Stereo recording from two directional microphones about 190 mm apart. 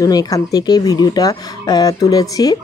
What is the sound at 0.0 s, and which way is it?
Speech, 20° left (ahead or behind).